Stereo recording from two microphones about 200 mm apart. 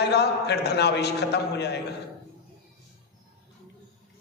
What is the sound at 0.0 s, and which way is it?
A man's voice, 55° left (ahead or behind).